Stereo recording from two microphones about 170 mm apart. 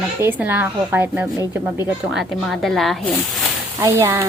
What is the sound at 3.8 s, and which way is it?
Speech, 15° right (ahead or behind).